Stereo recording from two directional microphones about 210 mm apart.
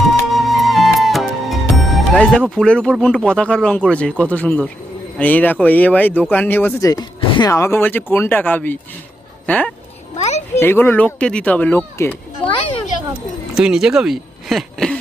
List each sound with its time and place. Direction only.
0.1 s music: centre (ahead or behind)
2.4 s speech: 5° left (ahead or behind)
10.2 s a sound: 30° left (ahead or behind)
10.6 s speech: 10° left (ahead or behind)
13.6 s speech: 5° right (ahead or behind)